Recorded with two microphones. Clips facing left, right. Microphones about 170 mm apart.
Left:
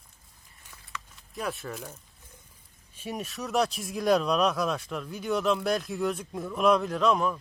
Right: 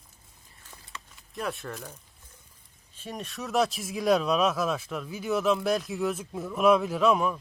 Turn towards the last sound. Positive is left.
turn(degrees=-5)  # may be behind; listen again after turning